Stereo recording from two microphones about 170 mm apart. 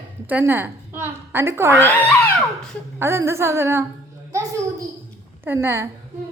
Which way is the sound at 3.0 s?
15° right (ahead or behind).